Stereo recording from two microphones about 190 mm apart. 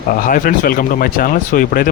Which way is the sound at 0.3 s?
45° left (ahead or behind).